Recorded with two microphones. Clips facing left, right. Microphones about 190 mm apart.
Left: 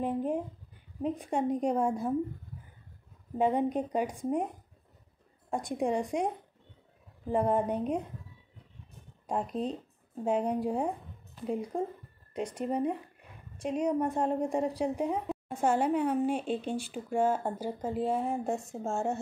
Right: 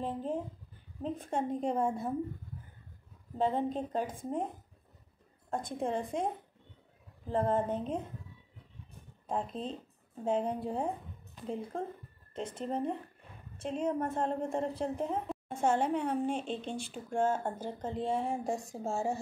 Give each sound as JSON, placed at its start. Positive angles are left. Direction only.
{"t": 0.0, "sound": "speech", "side_deg": 15}
{"t": 3.3, "sound": "speech", "side_deg": 15}
{"t": 5.5, "sound": "speech", "side_deg": 15}
{"t": 9.3, "sound": "speech", "side_deg": 10}
{"t": 12.4, "sound": "a woman's voice", "side_deg": 10}